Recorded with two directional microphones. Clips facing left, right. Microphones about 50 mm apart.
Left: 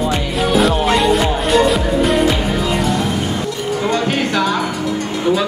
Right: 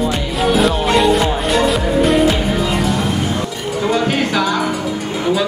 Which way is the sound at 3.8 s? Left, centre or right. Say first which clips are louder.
Right 2 dB; centre.